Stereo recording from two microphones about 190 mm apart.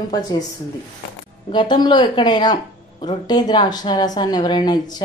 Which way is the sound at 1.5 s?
25° left (ahead or behind).